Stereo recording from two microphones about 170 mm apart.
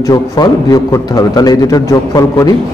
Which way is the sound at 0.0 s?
20° left (ahead or behind).